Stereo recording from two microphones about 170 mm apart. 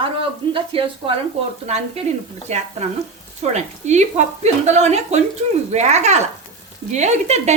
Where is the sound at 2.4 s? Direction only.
40° right (ahead or behind).